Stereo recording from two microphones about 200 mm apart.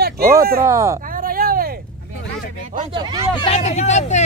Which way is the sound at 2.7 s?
25° right (ahead or behind).